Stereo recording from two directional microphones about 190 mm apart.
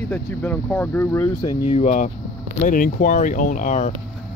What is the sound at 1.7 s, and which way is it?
Speech, 40° left (ahead or behind).